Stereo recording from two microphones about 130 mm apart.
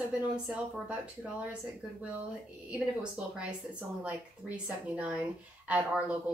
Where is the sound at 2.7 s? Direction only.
10° right (ahead or behind).